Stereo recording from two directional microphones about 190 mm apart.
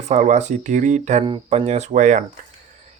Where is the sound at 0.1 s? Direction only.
40° right (ahead or behind).